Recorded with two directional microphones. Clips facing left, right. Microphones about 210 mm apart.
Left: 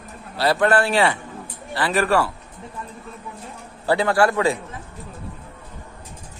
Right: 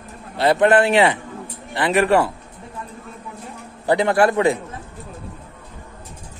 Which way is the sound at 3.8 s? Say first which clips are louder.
Right 2 dB; 20° right (ahead or behind).